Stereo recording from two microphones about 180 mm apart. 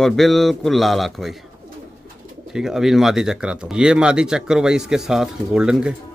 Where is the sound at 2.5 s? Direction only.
Centre (ahead or behind).